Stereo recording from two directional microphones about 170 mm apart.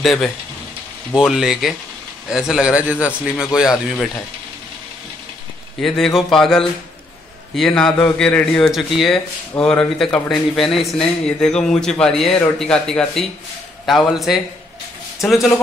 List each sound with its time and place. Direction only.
0.0 s speech: centre (ahead or behind)
5.8 s speech: centre (ahead or behind)